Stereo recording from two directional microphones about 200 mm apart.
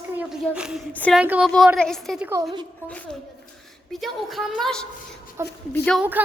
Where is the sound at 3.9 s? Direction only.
Centre (ahead or behind).